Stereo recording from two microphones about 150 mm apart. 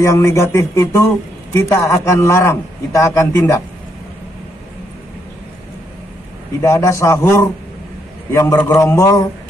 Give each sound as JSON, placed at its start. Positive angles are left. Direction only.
{"t": 0.0, "sound": "a man's voice", "side_deg": 20}
{"t": 6.6, "sound": "a man's voice", "side_deg": 20}